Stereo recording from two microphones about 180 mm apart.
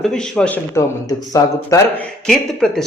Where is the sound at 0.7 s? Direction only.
20° left (ahead or behind).